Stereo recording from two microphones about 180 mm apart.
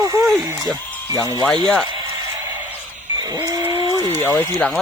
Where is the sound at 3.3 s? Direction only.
20° right (ahead or behind).